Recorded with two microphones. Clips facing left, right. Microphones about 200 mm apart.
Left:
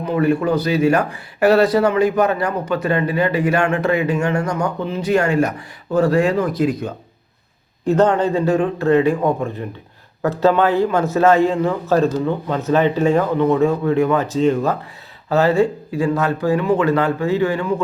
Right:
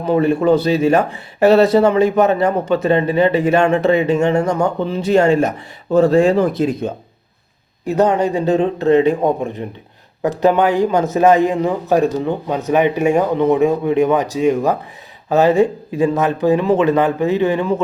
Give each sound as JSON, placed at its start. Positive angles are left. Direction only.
{"t": 0.0, "sound": "speech", "side_deg": -25}
{"t": 7.9, "sound": "a man's voice", "side_deg": -10}